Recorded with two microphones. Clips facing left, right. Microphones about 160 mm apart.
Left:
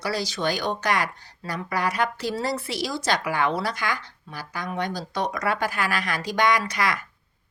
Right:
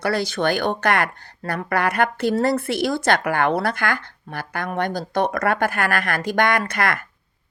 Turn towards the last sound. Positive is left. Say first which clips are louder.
# right 2 dB
turn(degrees=-55)  # may be behind; listen again after turning